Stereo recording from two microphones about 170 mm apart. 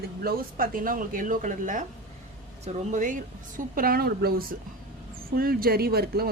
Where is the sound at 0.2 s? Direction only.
60° right (ahead or behind).